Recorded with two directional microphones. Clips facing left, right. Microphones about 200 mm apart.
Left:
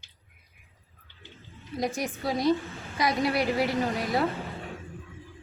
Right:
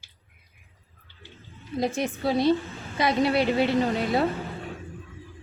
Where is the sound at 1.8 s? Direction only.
25° right (ahead or behind).